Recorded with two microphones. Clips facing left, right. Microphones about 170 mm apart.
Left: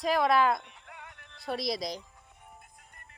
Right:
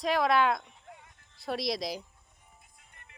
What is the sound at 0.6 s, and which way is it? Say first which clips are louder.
Music: left 2 dB; 75° left (ahead or behind).